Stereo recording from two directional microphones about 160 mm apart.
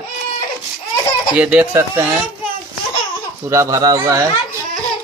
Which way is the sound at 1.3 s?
10° right (ahead or behind).